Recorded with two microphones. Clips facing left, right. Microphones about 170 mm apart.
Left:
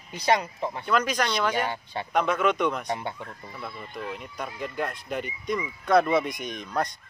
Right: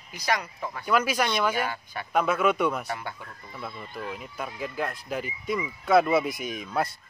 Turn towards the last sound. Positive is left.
turn(degrees=-5)  # may be behind; listen again after turning